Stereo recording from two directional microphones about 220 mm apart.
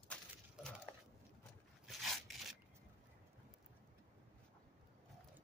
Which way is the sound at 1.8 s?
Centre (ahead or behind).